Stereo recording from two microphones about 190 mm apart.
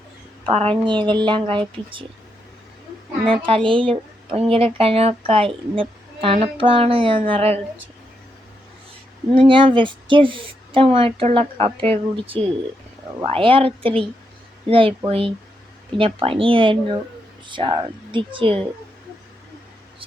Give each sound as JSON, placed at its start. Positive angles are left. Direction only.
{"t": 0.4, "sound": "a woman's voice", "side_deg": -30}
{"t": 3.2, "sound": "a woman's voice", "side_deg": -30}
{"t": 9.3, "sound": "a woman's voice", "side_deg": -30}